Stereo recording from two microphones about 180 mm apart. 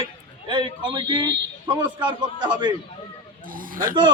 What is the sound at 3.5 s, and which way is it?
Speech, 50° right (ahead or behind).